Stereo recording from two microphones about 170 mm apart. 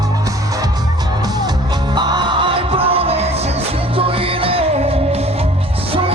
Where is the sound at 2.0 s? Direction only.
25° right (ahead or behind).